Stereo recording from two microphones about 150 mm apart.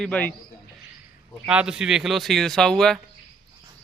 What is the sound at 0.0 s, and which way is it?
Speech, 10° left (ahead or behind).